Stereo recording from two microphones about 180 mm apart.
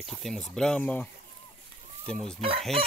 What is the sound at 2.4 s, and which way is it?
Chicken, 35° right (ahead or behind).